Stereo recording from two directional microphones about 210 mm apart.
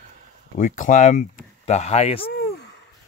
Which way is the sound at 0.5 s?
35° left (ahead or behind).